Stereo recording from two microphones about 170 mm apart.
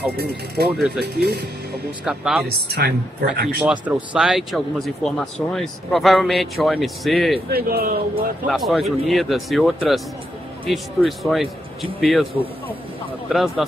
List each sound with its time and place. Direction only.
0.7 s speech: 5° right (ahead or behind)
1.0 s speech: 65° right (ahead or behind)
2.0 s speech: centre (ahead or behind)
2.4 s a woman's voice: 65° right (ahead or behind)
3.8 s speech: 5° right (ahead or behind)
7.5 s a woman's voice: 60° right (ahead or behind)
8.5 s speech: centre (ahead or behind)